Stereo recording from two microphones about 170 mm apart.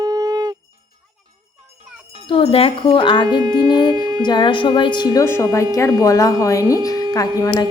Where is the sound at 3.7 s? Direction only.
25° left (ahead or behind).